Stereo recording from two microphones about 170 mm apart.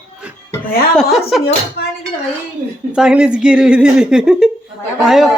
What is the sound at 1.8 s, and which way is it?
Dishes, 75° left (ahead or behind).